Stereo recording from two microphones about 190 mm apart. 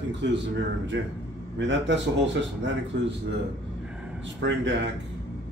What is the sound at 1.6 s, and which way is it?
A man's voice, 70° right (ahead or behind).